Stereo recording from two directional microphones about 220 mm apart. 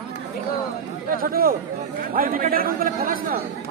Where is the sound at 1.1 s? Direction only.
40° right (ahead or behind).